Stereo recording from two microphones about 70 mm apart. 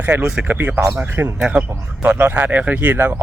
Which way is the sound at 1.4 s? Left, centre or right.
Centre.